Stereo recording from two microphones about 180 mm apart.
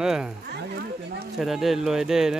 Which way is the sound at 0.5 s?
60° right (ahead or behind).